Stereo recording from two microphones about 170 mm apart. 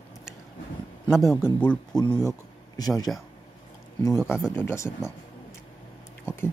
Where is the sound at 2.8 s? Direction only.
20° left (ahead or behind).